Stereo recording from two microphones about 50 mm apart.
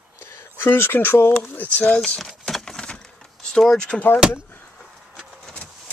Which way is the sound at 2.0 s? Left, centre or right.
Centre.